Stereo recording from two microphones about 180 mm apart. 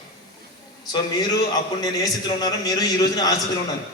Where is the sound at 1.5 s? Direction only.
20° left (ahead or behind).